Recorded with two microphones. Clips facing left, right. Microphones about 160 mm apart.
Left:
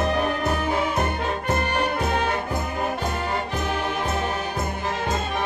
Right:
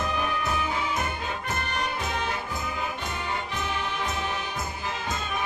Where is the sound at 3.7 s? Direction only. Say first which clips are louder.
Left 6 dB; 55° left (ahead or behind).